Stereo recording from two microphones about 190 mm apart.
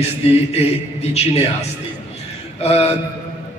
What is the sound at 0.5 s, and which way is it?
Speech, 35° left (ahead or behind).